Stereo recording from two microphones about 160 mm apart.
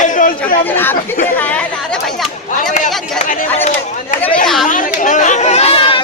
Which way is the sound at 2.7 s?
50° left (ahead or behind).